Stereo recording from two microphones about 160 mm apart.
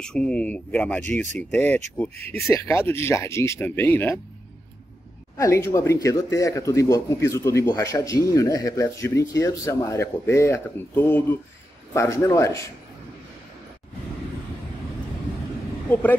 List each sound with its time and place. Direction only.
0.0 s speech: 5° left (ahead or behind)
5.4 s speech: 15° left (ahead or behind)
15.9 s speech: 10° left (ahead or behind)